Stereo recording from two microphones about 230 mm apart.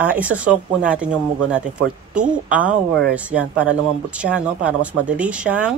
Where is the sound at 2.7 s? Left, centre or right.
Right.